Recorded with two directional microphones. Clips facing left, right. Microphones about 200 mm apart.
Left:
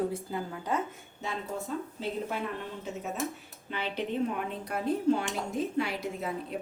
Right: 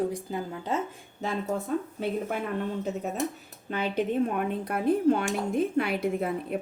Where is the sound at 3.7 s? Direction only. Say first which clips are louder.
Right 5 dB; 45° right (ahead or behind).